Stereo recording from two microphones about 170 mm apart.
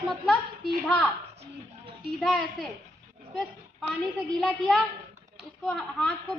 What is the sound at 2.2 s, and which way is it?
Speech, centre (ahead or behind).